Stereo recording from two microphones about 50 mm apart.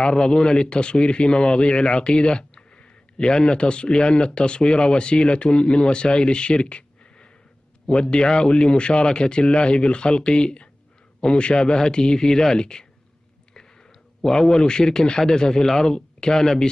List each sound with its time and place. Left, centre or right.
0.0 s a man's voice: centre
14.2 s a man's voice: centre